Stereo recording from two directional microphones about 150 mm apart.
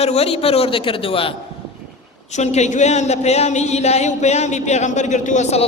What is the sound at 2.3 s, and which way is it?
A woman's voice, 50° left (ahead or behind).